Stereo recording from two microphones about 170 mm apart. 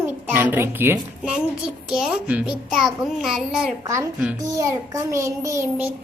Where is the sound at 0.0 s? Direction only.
15° right (ahead or behind).